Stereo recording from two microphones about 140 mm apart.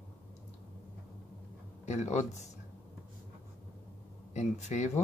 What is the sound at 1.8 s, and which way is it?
Speech, 55° left (ahead or behind).